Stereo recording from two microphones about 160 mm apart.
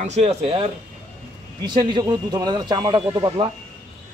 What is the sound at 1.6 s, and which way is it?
Speech, 30° right (ahead or behind).